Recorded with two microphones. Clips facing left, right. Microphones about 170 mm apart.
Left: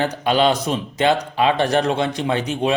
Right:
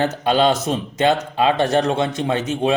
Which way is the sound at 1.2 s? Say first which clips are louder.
Even; 25° right (ahead or behind).